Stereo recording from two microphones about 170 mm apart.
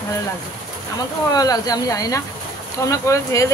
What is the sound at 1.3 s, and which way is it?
Speech, 20° left (ahead or behind).